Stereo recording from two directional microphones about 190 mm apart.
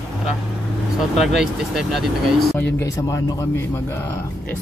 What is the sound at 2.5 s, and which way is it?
Speech, 10° left (ahead or behind).